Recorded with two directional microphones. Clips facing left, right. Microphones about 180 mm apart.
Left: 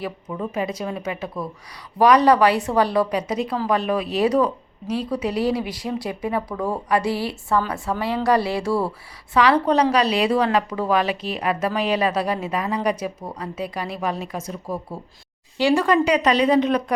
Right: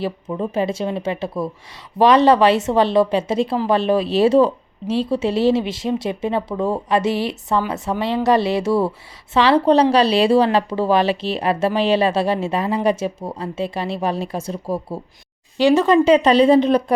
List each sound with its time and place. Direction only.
0.0 s speech: 30° right (ahead or behind)
15.6 s speech: 20° right (ahead or behind)